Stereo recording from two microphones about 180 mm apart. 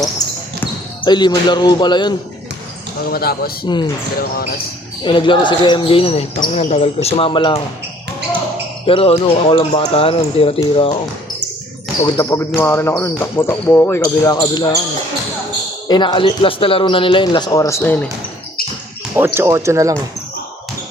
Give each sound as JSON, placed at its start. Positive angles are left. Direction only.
{"t": 0.2, "sound": "basketball bounce", "side_deg": 20}
{"t": 0.6, "sound": "speech", "side_deg": 25}
{"t": 3.1, "sound": "a man's voice", "side_deg": 55}
{"t": 5.0, "sound": "speech", "side_deg": 25}
{"t": 8.9, "sound": "speech", "side_deg": 30}
{"t": 12.1, "sound": "speech", "side_deg": 15}
{"t": 14.3, "sound": "speech", "side_deg": 25}
{"t": 15.9, "sound": "speech", "side_deg": 25}
{"t": 19.1, "sound": "speech", "side_deg": -15}